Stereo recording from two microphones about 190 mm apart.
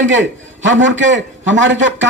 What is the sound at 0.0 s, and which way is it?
Speech, 80° right.